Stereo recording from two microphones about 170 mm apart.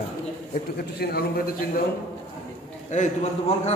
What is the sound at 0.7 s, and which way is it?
Speech, 65° left (ahead or behind).